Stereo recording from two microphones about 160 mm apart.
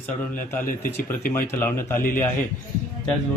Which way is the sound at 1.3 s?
15° left (ahead or behind).